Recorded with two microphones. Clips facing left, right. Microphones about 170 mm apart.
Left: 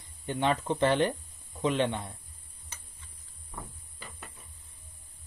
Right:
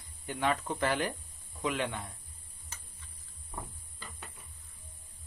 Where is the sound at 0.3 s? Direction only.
25° left (ahead or behind).